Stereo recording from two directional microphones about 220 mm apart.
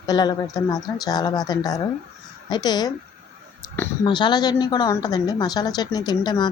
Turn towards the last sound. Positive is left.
turn(degrees=20)  # may be behind; listen again after turning